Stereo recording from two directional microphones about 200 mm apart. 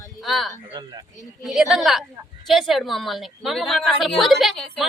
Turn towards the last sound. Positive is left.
turn(degrees=0)  # may be behind; listen again after turning